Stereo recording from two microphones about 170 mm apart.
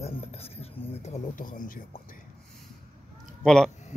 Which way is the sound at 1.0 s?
45° left (ahead or behind).